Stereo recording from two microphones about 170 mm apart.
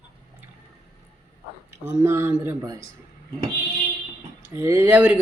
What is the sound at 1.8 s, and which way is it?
A man's voice, 15° right (ahead or behind).